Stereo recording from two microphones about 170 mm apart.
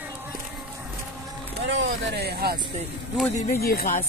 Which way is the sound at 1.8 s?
80° right.